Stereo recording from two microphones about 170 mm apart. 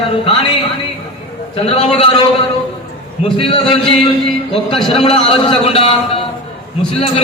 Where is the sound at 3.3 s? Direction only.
30° left (ahead or behind).